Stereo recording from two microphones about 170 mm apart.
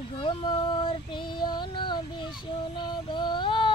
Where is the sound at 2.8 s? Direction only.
25° left (ahead or behind).